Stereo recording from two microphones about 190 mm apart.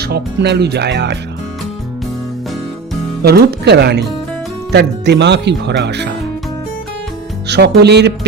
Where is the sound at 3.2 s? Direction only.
60° right (ahead or behind).